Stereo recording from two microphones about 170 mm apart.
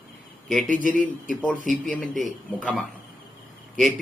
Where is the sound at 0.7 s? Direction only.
50° right (ahead or behind).